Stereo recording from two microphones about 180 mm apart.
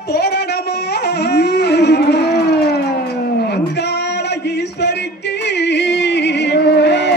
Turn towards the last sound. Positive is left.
turn(degrees=65)  # may be behind; listen again after turning